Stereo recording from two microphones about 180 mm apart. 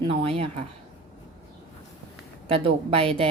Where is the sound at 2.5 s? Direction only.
30° right (ahead or behind).